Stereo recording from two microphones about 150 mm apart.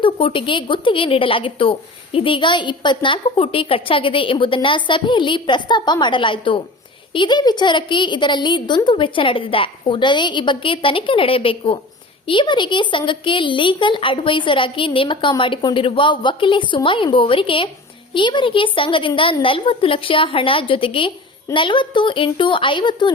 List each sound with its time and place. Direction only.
0.0 s a woman's voice: 35° left (ahead or behind)